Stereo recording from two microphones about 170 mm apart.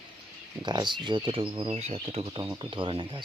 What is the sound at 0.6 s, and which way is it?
Speech, 25° right (ahead or behind).